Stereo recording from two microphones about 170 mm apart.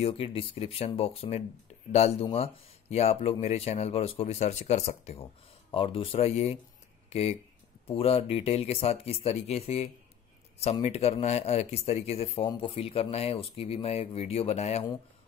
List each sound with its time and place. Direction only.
0.0 s speech: 30° left (ahead or behind)